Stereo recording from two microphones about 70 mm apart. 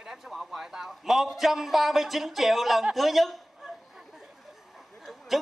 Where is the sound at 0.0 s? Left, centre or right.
Centre.